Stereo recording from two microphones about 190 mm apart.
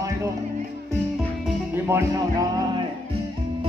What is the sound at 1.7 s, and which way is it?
Music, 15° right (ahead or behind).